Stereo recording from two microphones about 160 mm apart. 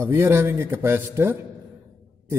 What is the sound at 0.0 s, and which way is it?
A man's voice, 15° right (ahead or behind).